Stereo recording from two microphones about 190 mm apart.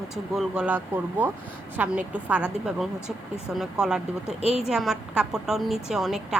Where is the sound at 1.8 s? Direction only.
5° right (ahead or behind).